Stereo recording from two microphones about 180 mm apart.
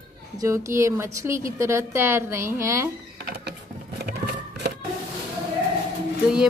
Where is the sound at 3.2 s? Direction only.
65° right (ahead or behind).